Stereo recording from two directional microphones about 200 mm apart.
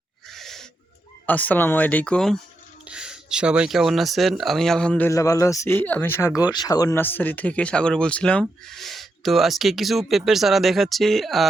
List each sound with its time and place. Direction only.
0.3 s wheeze: centre (ahead or behind)
1.3 s speech: 10° left (ahead or behind)